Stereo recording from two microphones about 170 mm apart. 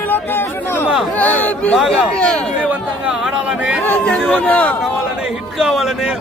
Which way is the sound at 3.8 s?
5° left (ahead or behind).